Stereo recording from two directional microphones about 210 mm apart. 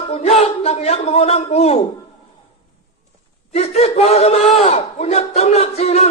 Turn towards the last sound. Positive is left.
turn(degrees=30)  # may be behind; listen again after turning